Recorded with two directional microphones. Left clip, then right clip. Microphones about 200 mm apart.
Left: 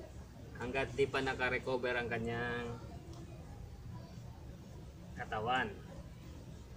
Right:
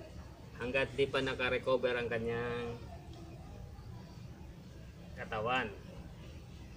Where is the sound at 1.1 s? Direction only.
10° left (ahead or behind).